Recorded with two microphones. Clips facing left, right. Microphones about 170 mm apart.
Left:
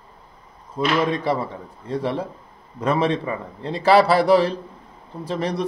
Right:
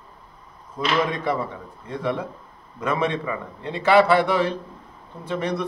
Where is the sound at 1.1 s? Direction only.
35° left (ahead or behind).